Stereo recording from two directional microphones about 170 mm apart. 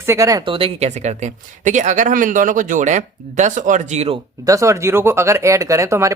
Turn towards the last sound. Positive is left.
turn(degrees=-15)  # may be behind; listen again after turning